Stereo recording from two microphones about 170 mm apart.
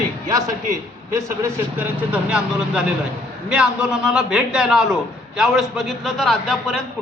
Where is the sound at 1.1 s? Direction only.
15° right (ahead or behind); by 6.8 s centre (ahead or behind).